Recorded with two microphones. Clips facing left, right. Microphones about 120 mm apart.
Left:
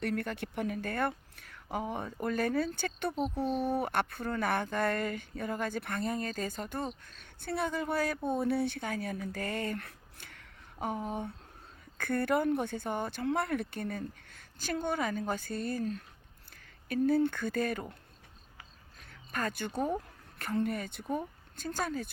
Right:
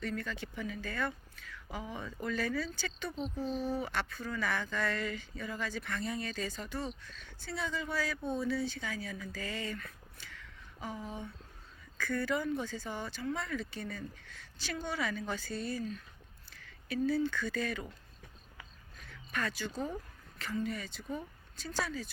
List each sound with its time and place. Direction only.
0.0 s a woman's voice: 60° left (ahead or behind)
19.3 s a woman's voice: 45° left (ahead or behind)